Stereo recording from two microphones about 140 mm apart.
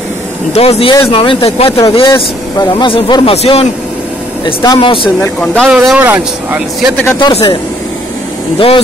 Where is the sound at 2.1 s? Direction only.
25° left (ahead or behind); by 3.6 s 40° left (ahead or behind).